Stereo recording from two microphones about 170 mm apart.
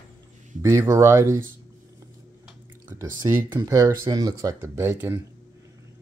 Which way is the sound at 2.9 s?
15° right (ahead or behind).